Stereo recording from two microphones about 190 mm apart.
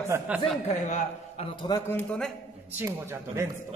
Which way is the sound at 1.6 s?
20° left (ahead or behind).